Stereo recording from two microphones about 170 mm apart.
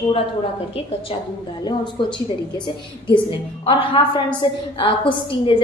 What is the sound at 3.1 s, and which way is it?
A woman's voice, 30° left (ahead or behind).